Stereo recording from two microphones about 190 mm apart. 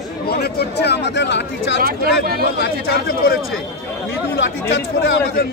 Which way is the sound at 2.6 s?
55° left (ahead or behind).